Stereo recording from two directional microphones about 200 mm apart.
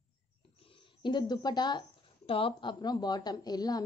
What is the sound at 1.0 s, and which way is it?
Speech, 20° left (ahead or behind).